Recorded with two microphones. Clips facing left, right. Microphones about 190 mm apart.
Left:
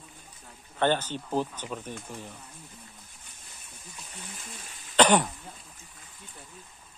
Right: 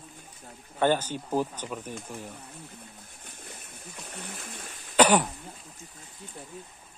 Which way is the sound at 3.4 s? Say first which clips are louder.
Right 6 dB; 65° right (ahead or behind).